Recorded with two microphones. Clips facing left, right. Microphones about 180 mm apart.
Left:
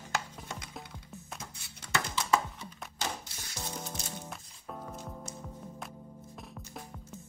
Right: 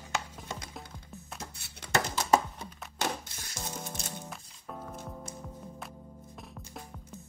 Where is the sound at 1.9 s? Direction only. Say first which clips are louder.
Right 4 dB; 40° right (ahead or behind).